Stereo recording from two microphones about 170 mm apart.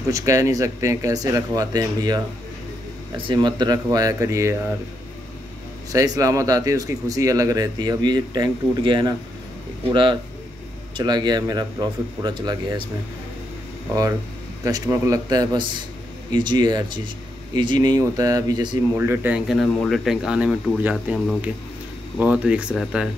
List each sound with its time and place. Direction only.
0.1 s speech: 20° right (ahead or behind)
5.9 s speech: 20° right (ahead or behind)
11.0 s speech: 25° right (ahead or behind)
14.6 s speech: 20° right (ahead or behind)
18.9 s speech: 10° right (ahead or behind)
22.2 s speech: 10° right (ahead or behind)